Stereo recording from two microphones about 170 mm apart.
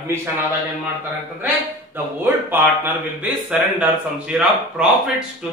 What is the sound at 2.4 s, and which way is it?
Speech, 10° right (ahead or behind).